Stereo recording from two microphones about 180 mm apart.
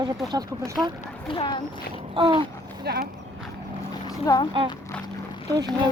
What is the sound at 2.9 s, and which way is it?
Speech, 65° right (ahead or behind).